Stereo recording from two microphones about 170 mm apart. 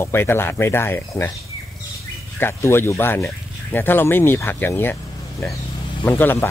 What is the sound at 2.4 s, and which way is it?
Speech, 15° left (ahead or behind).